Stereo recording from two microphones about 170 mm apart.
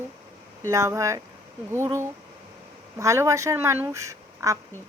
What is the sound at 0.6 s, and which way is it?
Speech, 15° right (ahead or behind).